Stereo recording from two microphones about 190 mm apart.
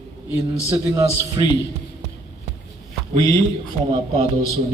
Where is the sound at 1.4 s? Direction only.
25° right (ahead or behind).